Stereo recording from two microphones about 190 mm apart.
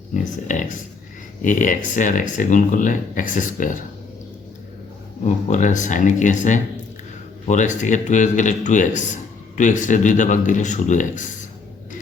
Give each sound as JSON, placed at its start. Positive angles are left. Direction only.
{"t": 0.4, "sound": "a man's voice", "side_deg": 40}
{"t": 5.2, "sound": "a man's voice", "side_deg": 40}